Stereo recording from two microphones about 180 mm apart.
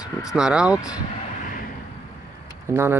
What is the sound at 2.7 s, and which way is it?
Speech, 15° right (ahead or behind).